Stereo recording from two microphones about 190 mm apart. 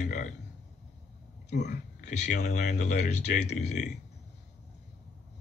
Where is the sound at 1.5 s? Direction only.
60° left (ahead or behind).